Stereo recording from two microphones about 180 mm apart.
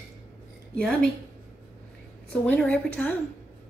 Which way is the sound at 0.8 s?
5° left (ahead or behind).